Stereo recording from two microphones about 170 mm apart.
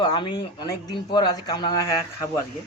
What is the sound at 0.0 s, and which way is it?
Speech, 25° left (ahead or behind).